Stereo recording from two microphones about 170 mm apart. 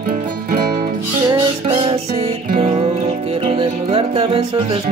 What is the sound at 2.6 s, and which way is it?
Music, 35° right (ahead or behind).